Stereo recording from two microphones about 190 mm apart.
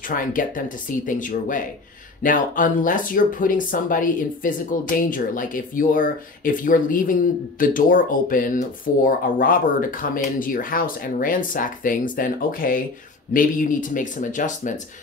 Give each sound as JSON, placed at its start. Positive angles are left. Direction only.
{"t": 0.1, "sound": "speech", "side_deg": 45}